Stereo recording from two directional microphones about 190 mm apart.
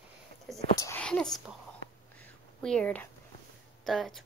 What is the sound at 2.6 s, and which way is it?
Speech, 5° left (ahead or behind).